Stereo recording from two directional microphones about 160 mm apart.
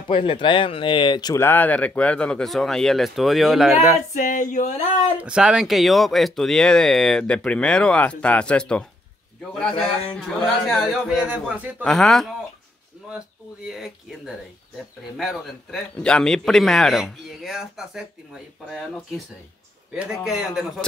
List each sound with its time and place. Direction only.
0.1 s speech: 30° left (ahead or behind); by 3.8 s centre (ahead or behind)
4.1 s a sound: 55° left (ahead or behind)
5.2 s a man's voice: 5° right (ahead or behind)
13.7 s a man's voice: centre (ahead or behind)